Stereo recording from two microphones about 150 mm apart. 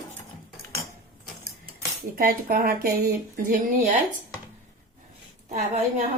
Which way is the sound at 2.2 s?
75° right (ahead or behind).